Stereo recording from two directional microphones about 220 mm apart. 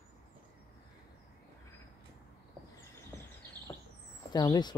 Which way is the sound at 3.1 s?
15° left (ahead or behind).